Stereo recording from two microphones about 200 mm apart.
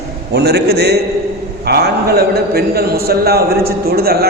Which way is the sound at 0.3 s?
55° right (ahead or behind).